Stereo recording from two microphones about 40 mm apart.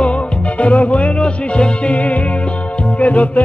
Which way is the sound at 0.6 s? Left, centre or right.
Left.